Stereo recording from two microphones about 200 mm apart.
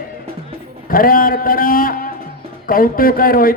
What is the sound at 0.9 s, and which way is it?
A man's voice, 45° left (ahead or behind).